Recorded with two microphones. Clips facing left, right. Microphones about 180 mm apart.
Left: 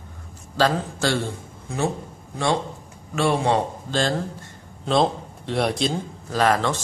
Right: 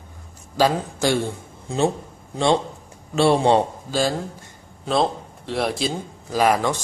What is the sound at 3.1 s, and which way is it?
Speech, 30° right (ahead or behind).